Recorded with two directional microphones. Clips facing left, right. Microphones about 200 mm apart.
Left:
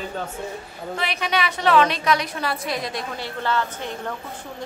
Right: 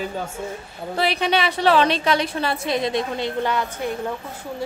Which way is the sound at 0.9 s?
30° right (ahead or behind).